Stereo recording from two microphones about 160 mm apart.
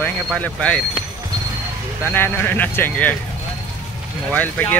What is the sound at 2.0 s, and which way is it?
Speech, 10° left (ahead or behind).